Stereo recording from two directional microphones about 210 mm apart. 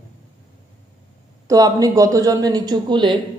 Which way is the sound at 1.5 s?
15° right (ahead or behind).